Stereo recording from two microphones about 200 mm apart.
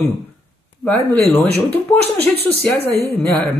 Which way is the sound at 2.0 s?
55° right (ahead or behind).